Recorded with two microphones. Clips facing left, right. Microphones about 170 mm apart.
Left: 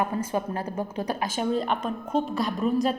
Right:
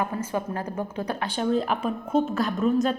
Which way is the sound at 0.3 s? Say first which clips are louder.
Right 1 dB; 25° left (ahead or behind).